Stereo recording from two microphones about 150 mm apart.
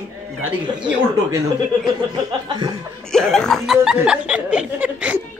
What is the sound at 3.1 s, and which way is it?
Speech, 5° left (ahead or behind).